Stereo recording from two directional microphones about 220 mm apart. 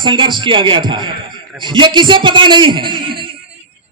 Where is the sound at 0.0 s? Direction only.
20° right (ahead or behind).